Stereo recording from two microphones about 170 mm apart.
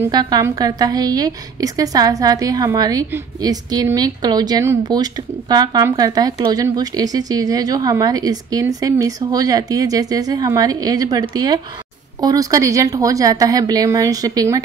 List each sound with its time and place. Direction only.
0.1 s a woman's voice: 25° right (ahead or behind)